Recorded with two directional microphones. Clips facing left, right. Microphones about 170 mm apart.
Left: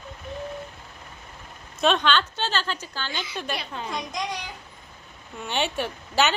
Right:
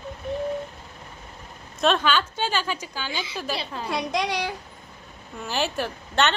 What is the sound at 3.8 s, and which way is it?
Speech, 70° right (ahead or behind).